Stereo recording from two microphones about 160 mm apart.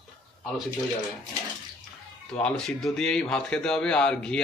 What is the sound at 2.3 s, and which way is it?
Speech, 5° left (ahead or behind).